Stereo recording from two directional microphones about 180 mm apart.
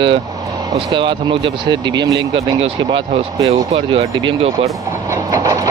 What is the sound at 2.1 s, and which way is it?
Speech, 90° right.